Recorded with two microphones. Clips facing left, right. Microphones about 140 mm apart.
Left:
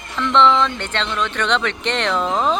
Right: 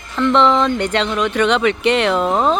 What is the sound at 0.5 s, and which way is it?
Speech, 10° right (ahead or behind).